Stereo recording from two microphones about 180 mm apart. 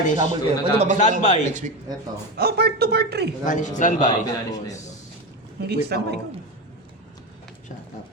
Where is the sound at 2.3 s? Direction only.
60° right (ahead or behind).